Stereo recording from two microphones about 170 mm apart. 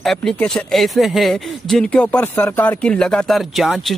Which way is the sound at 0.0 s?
5° left (ahead or behind).